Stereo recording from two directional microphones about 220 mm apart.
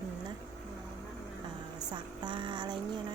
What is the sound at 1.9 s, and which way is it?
Speech, 20° right (ahead or behind).